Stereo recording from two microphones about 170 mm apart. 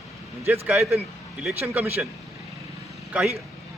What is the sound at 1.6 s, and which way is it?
Speech, 10° right (ahead or behind).